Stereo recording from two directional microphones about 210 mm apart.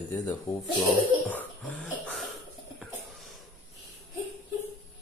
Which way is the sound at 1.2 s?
5° left (ahead or behind).